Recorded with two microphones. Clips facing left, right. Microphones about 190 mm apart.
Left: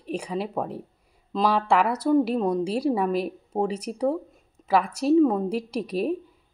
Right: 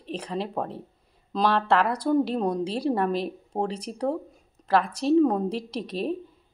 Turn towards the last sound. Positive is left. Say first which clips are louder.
# left 3 dB
turn(degrees=10)  # may be behind; listen again after turning